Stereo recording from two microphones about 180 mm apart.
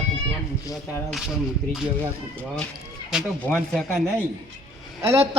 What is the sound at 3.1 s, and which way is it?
Speech, centre (ahead or behind).